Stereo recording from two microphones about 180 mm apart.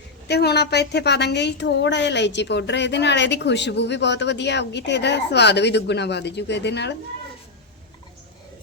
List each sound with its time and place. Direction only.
0.3 s a woman's voice: 65° left (ahead or behind)